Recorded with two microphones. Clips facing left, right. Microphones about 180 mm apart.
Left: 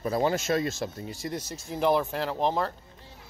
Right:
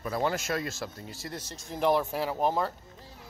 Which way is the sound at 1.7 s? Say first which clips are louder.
Left 1 dB; centre (ahead or behind).